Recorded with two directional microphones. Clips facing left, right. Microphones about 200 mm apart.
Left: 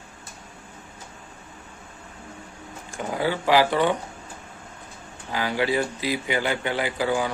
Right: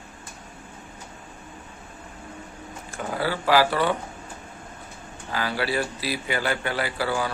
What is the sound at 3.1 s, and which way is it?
Speech, 15° left (ahead or behind).